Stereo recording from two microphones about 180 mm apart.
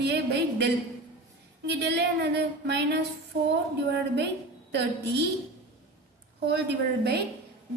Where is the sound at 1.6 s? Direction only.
70° right (ahead or behind).